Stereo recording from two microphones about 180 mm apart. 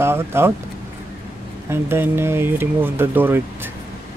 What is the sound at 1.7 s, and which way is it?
Speech, 15° right (ahead or behind).